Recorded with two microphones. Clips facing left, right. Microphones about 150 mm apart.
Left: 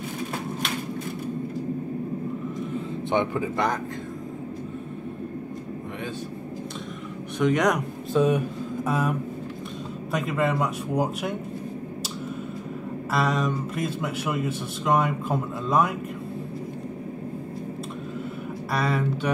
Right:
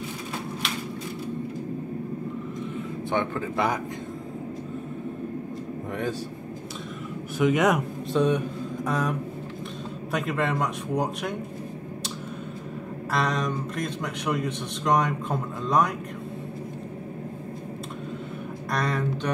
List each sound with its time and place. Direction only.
3.1 s a man's voice: 20° left (ahead or behind)
7.3 s a man's voice: 5° right (ahead or behind)
10.1 s a man's voice: centre (ahead or behind)
13.1 s a man's voice: 5° left (ahead or behind)
18.7 s speech: 5° left (ahead or behind)